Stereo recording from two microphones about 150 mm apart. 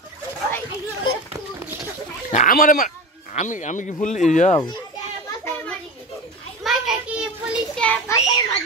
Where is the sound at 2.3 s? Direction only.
65° left (ahead or behind).